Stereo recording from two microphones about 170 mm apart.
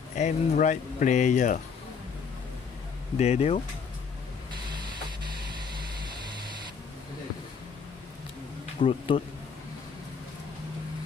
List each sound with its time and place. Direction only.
0.1 s speech: 45° left (ahead or behind)
3.2 s speech: 40° left (ahead or behind)
8.7 s speech: 30° left (ahead or behind)